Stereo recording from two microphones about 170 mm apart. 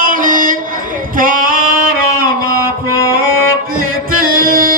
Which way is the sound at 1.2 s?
55° right (ahead or behind).